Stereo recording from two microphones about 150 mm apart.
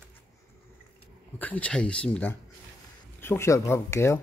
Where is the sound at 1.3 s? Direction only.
10° left (ahead or behind).